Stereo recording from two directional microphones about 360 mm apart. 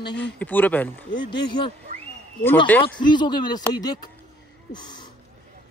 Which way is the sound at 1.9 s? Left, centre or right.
Right.